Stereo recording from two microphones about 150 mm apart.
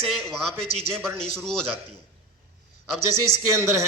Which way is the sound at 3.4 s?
20° right (ahead or behind).